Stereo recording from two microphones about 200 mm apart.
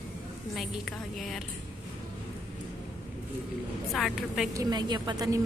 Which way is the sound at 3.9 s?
Centre (ahead or behind).